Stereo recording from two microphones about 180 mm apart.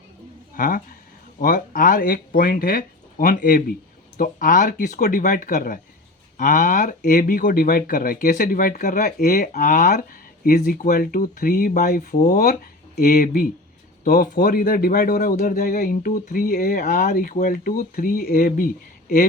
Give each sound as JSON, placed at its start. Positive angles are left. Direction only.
{"t": 0.5, "sound": "speech", "side_deg": 50}